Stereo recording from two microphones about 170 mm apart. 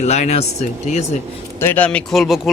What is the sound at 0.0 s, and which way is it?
Speech, 40° left (ahead or behind).